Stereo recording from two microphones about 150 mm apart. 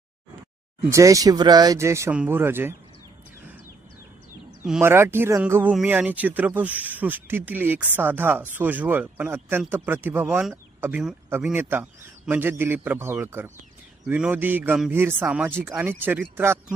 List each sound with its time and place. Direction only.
0.9 s speech: 20° right (ahead or behind)
4.8 s speech: 15° right (ahead or behind)
10.5 s a sound: 15° right (ahead or behind)
11.4 s speech: 10° right (ahead or behind)